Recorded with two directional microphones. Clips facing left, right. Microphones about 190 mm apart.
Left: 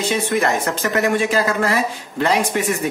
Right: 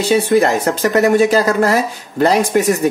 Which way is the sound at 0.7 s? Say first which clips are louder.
Right 6 dB; 40° right (ahead or behind).